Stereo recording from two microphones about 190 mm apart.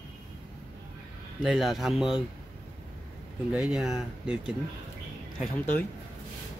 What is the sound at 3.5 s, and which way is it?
Speech, 5° right (ahead or behind).